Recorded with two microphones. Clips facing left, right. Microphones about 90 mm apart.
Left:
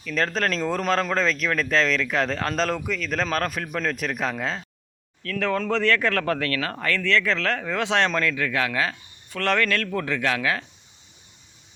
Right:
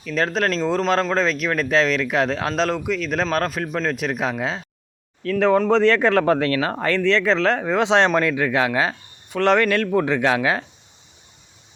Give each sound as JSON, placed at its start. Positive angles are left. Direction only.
{"t": 0.0, "sound": "speech", "side_deg": -10}
{"t": 5.2, "sound": "speech", "side_deg": -25}